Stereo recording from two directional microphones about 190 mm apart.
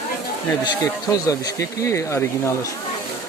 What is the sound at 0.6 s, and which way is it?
Speech, 20° left (ahead or behind).